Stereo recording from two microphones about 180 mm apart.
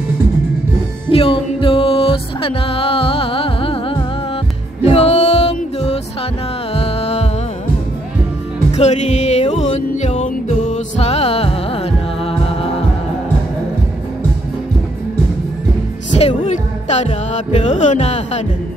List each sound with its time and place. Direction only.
1.1 s music: 30° left (ahead or behind)
8.7 s music: 40° left (ahead or behind)
16.2 s music: 35° left (ahead or behind)